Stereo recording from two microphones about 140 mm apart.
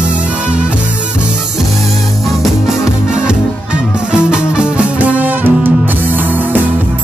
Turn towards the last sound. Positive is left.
turn(degrees=-15)  # may be behind; listen again after turning